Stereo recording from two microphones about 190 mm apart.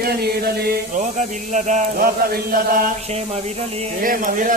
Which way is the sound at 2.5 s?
50° right (ahead or behind).